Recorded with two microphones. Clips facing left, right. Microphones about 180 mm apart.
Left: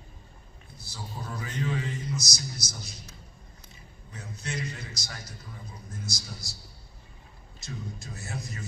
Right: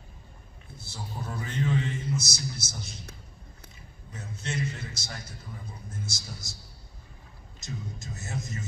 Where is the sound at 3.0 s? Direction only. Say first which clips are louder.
Right 2 dB; 60° right (ahead or behind).